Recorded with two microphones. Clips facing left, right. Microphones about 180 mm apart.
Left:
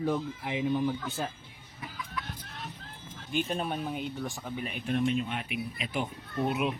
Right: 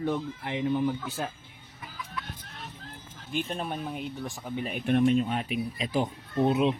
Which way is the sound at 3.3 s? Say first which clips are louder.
Left 1 dB; centre (ahead or behind).